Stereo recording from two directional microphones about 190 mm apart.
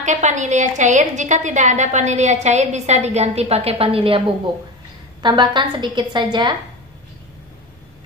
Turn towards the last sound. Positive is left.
turn(degrees=-25)  # may be behind; listen again after turning